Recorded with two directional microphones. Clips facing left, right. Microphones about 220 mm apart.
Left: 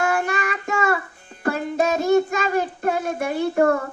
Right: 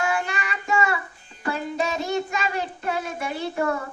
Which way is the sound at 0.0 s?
50° left (ahead or behind).